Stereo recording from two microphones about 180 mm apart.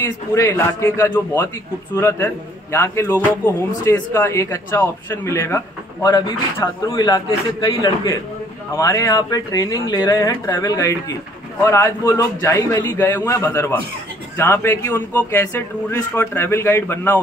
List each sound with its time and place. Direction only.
0.0 s a man's voice: 15° left (ahead or behind)